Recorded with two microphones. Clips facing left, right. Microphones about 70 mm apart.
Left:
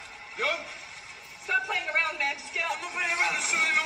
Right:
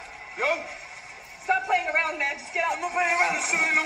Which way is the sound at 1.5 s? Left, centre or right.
Right.